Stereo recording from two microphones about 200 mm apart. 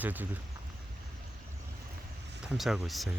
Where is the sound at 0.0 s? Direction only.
10° right (ahead or behind).